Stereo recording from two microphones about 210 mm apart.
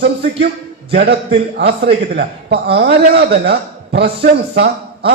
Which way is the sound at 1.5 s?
50° right (ahead or behind).